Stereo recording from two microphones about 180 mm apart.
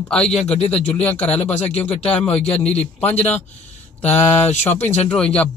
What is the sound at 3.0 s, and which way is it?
Speech, 10° left (ahead or behind).